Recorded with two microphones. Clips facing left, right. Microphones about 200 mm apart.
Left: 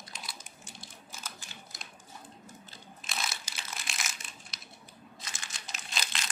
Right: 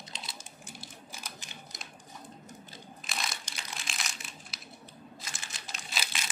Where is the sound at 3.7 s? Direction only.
Centre (ahead or behind).